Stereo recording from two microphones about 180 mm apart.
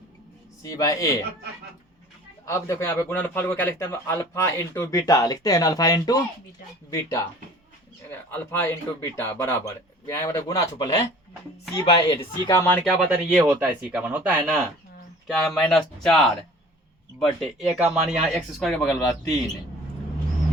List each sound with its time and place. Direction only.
0.6 s speech: 20° left (ahead or behind)
2.5 s a man's voice: 15° left (ahead or behind)
8.3 s a man's voice: 10° left (ahead or behind)
12.5 s a man's voice: 15° left (ahead or behind)
12.8 s speech: centre (ahead or behind)